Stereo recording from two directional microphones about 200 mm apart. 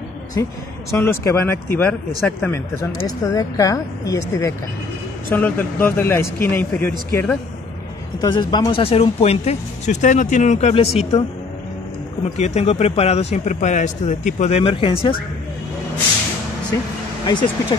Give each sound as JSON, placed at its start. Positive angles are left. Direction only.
{"t": 0.4, "sound": "speech", "side_deg": 15}
{"t": 8.2, "sound": "a man's voice", "side_deg": 20}
{"t": 12.4, "sound": "a man's voice", "side_deg": 35}
{"t": 17.3, "sound": "speech", "side_deg": 25}